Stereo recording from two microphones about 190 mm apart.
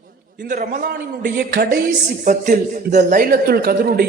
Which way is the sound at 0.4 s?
40° right (ahead or behind).